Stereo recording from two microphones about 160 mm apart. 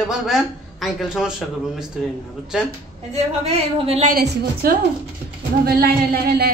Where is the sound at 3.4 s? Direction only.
40° right (ahead or behind).